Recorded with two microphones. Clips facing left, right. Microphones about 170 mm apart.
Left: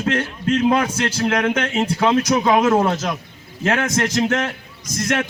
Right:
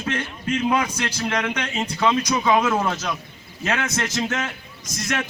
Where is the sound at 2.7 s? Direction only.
30° left (ahead or behind).